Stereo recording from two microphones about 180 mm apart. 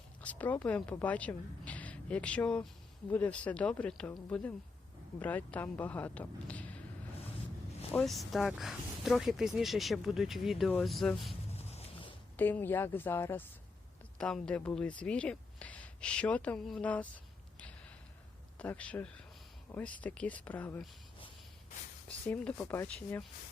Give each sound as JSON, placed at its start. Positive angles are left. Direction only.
{"t": 0.2, "sound": "a woman's voice", "side_deg": 10}
{"t": 7.9, "sound": "speech", "side_deg": 0}
{"t": 11.5, "sound": "a sound", "side_deg": 35}
{"t": 12.4, "sound": "speech", "side_deg": 10}
{"t": 18.6, "sound": "speech", "side_deg": 10}
{"t": 22.3, "sound": "speech", "side_deg": 10}